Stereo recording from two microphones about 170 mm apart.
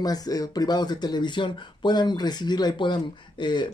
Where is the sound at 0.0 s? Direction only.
20° left (ahead or behind).